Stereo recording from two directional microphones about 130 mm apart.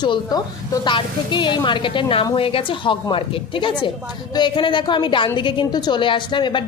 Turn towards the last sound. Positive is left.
turn(degrees=40)  # may be behind; listen again after turning